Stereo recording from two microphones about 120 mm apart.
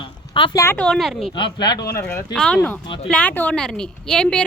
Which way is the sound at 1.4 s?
40° left (ahead or behind).